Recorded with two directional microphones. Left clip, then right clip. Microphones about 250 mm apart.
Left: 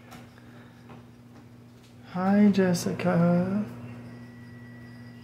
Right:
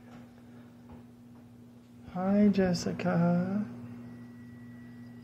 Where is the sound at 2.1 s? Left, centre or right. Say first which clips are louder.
Left 4 dB; centre.